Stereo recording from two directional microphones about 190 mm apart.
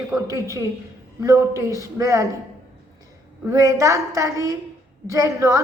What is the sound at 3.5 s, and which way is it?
A woman's voice, 15° right (ahead or behind).